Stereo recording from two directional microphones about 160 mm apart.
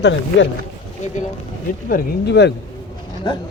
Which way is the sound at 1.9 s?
90° left.